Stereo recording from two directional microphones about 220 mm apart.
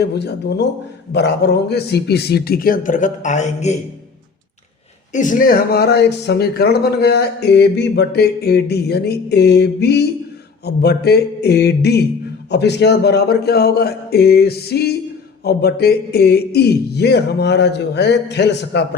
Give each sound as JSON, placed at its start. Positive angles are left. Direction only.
{"t": 0.0, "sound": "speech", "side_deg": 50}
{"t": 5.1, "sound": "speech", "side_deg": 35}